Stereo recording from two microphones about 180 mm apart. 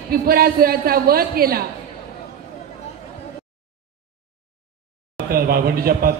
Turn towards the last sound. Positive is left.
turn(degrees=-55)  # may be behind; listen again after turning